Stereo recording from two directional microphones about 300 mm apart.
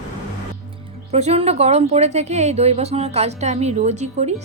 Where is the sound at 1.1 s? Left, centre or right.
Right.